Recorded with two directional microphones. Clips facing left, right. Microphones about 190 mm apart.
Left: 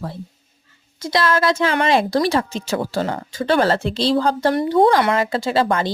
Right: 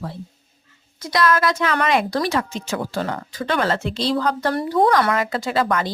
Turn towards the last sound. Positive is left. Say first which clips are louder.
# left 2 dB
turn(degrees=30)  # may be behind; listen again after turning